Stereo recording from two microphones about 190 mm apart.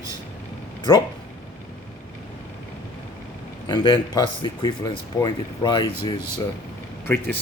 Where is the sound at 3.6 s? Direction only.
25° left (ahead or behind).